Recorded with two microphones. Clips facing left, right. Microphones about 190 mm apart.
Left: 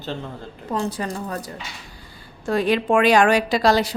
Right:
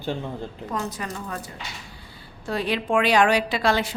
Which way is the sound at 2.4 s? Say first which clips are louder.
Left 6 dB; 50° left (ahead or behind).